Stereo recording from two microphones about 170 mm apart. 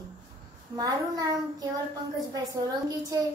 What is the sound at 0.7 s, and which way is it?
A woman's voice, 20° right (ahead or behind).